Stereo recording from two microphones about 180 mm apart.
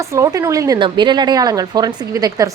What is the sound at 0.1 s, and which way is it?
A woman's voice, 15° right (ahead or behind).